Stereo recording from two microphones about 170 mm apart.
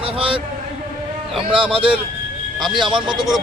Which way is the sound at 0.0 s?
30° right (ahead or behind).